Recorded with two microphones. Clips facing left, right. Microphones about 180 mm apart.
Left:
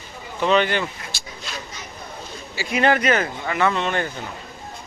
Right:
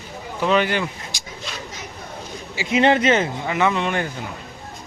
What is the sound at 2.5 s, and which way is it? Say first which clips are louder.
Speech: right 2 dB; 20° right (ahead or behind).